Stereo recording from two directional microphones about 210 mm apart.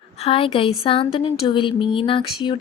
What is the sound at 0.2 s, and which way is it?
Speech, 25° left (ahead or behind).